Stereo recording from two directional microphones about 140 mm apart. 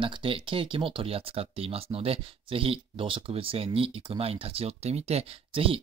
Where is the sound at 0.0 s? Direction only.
40° right (ahead or behind).